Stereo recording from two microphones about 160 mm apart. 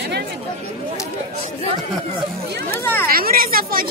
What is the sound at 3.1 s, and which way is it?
Speech, 65° right (ahead or behind).